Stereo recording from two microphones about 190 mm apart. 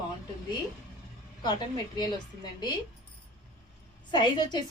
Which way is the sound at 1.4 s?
20° left (ahead or behind).